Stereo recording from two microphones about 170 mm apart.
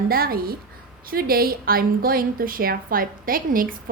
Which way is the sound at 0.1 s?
60° right (ahead or behind).